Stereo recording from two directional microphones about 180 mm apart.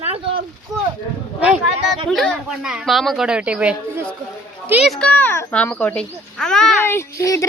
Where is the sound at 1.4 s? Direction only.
5° right (ahead or behind).